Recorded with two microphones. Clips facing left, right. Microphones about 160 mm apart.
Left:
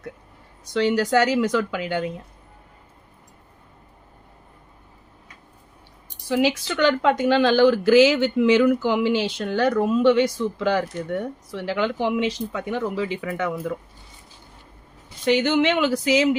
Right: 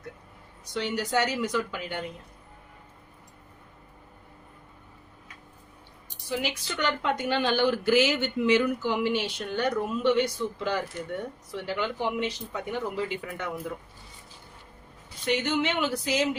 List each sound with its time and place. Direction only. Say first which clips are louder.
0.7 s speech: left 9 dB; 90° left
6.2 s speech: left 10 dB; 90° left
15.2 s speech: left 8 dB; 90° left